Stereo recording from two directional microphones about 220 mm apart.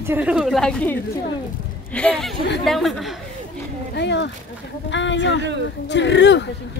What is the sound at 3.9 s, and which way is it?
Speech, 50° left (ahead or behind).